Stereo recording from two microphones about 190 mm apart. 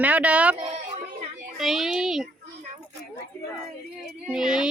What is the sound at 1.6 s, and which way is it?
Speech, centre (ahead or behind).